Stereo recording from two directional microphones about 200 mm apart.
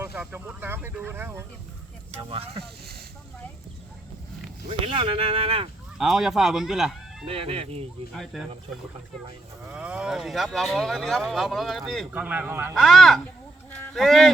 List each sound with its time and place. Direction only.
0.0 s speech: 10° right (ahead or behind)
2.1 s speech: 30° right (ahead or behind)
4.7 s speech: 25° right (ahead or behind)
6.0 s speech: 5° right (ahead or behind)
7.3 s speech: 30° right (ahead or behind)
8.1 s speech: centre (ahead or behind)
9.6 s speech: 5° right (ahead or behind)
12.7 s speech: centre (ahead or behind)
13.7 s a sound: centre (ahead or behind)